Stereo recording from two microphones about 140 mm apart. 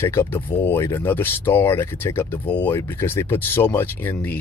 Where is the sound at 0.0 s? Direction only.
20° left (ahead or behind).